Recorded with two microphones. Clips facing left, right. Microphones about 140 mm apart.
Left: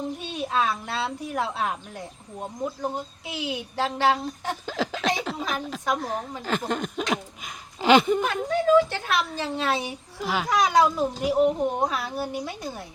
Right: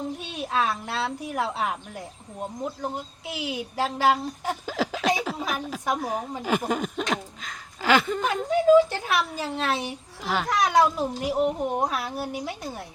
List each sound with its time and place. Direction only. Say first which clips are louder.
0.3 s speech: left 1 dB; centre (ahead or behind)
3.2 s speech: right 2 dB; centre (ahead or behind)
7.8 s speech: left 4 dB; 20° left (ahead or behind)
8.4 s speech: right 3 dB; 15° right (ahead or behind)